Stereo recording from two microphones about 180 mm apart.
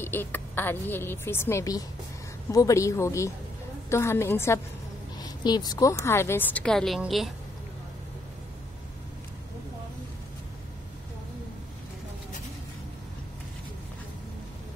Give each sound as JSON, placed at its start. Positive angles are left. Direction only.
{"t": 0.0, "sound": "a woman's voice", "side_deg": 10}